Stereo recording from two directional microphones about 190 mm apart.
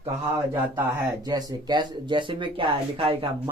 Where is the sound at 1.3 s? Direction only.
20° right (ahead or behind).